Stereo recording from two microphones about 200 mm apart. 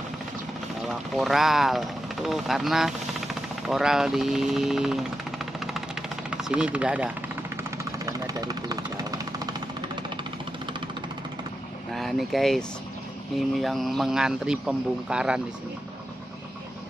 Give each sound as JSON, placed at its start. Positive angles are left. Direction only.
{"t": 0.8, "sound": "speech", "side_deg": 0}
{"t": 3.6, "sound": "vehicle", "side_deg": 0}
{"t": 7.7, "sound": "vehicle", "side_deg": -15}
{"t": 11.9, "sound": "speech", "side_deg": 0}